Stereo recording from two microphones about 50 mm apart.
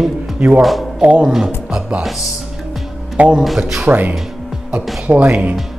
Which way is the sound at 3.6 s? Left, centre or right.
Centre.